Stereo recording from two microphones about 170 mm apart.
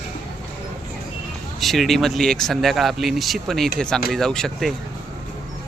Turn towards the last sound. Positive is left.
turn(degrees=0)  # may be behind; listen again after turning